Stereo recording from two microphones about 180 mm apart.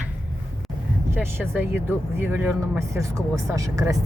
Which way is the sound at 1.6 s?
10° right (ahead or behind).